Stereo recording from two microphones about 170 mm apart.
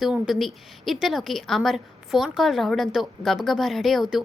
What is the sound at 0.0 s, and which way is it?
A woman's voice, centre (ahead or behind).